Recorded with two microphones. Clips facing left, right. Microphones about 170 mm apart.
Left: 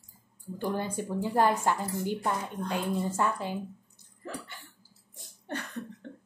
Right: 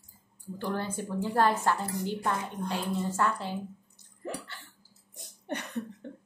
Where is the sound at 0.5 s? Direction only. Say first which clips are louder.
Left 1 dB; 15° left (ahead or behind).